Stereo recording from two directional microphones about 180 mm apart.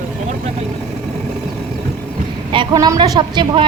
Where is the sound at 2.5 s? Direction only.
25° right (ahead or behind).